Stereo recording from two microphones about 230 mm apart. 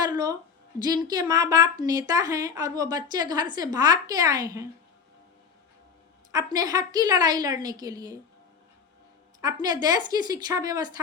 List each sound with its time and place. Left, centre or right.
0.0 s a sound: centre
0.8 s a woman's voice: centre
6.3 s a woman's voice: centre
9.4 s a woman's voice: centre